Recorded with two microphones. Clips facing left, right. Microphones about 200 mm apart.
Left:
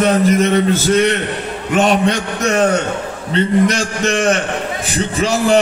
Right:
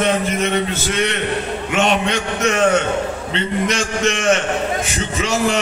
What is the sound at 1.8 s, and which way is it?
A man's voice, 40° left (ahead or behind).